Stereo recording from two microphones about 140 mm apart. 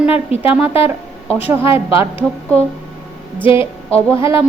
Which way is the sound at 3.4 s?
40° left (ahead or behind).